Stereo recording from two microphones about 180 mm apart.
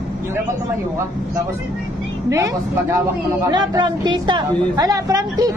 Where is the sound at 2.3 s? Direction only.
15° right (ahead or behind).